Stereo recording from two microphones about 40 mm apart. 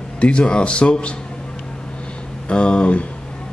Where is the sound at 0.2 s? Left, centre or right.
Left.